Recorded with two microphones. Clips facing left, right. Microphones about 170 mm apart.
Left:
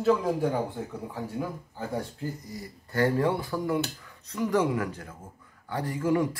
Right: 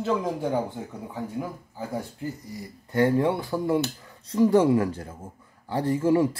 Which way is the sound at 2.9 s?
20° right (ahead or behind).